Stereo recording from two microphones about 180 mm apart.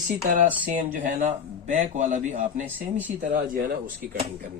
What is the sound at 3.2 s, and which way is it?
Speech, 50° right (ahead or behind).